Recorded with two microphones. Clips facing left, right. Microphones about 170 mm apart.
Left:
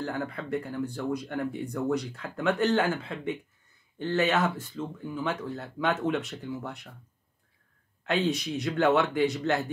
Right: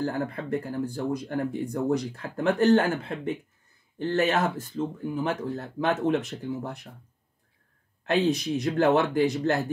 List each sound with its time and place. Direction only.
0.0 s speech: 40° right (ahead or behind)
8.6 s speech: 35° right (ahead or behind)